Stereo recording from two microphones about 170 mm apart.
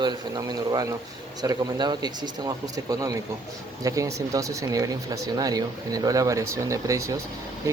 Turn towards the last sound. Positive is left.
turn(degrees=-15)  # may be behind; listen again after turning